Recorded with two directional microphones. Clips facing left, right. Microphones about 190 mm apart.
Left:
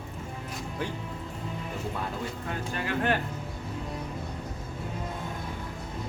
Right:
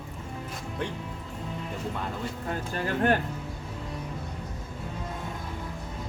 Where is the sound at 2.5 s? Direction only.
45° right (ahead or behind).